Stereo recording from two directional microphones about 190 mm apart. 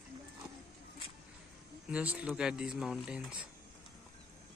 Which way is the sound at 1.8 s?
5° right (ahead or behind).